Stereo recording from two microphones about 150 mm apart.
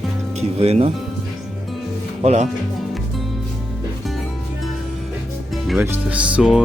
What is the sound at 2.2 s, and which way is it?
Speech, 50° right (ahead or behind).